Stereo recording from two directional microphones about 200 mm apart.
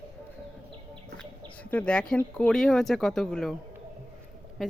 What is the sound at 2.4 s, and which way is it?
Speech, 5° left (ahead or behind).